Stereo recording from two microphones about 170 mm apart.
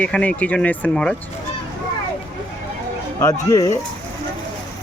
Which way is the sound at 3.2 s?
20° left (ahead or behind).